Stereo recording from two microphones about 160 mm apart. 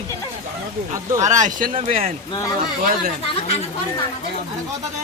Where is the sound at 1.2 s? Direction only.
50° right (ahead or behind).